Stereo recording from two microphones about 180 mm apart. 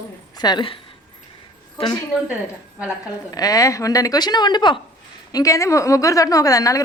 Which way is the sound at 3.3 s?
20° left (ahead or behind).